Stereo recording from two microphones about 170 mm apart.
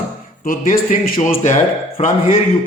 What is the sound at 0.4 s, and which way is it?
A man's voice, 50° left (ahead or behind).